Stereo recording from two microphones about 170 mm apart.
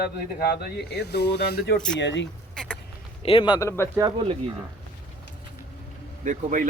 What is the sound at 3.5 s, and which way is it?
Speech, 15° left (ahead or behind).